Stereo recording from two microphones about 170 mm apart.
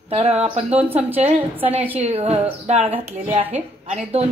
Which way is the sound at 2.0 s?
35° right (ahead or behind).